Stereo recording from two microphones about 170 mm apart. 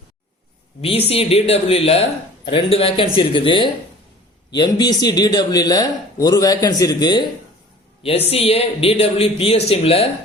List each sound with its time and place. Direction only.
0.8 s a man's voice: 35° left (ahead or behind)
8.0 s speech: 35° left (ahead or behind)